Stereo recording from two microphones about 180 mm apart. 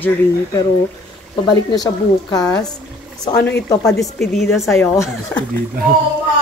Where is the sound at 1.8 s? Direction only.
20° left (ahead or behind).